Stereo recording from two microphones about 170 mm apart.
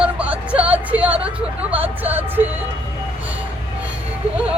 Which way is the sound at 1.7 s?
10° right (ahead or behind).